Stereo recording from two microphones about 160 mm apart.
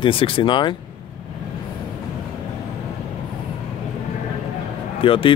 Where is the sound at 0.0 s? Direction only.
35° left (ahead or behind).